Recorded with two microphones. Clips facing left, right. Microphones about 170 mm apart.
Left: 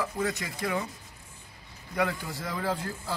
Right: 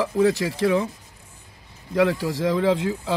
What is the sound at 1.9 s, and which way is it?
Speech, 90° right.